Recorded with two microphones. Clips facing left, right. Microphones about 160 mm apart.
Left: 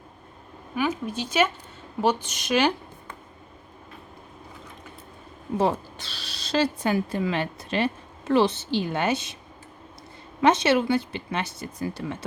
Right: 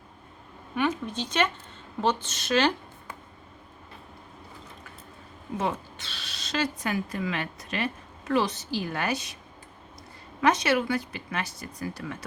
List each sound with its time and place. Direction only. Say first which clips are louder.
0.8 s a woman's voice: left 1 dB; 5° left (ahead or behind)
5.5 s speech: left 6 dB; 35° left (ahead or behind)
10.4 s speech: left 4 dB; 25° left (ahead or behind)